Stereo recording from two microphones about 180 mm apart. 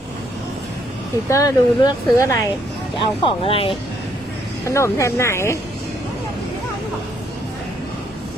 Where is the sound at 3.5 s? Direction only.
30° left (ahead or behind).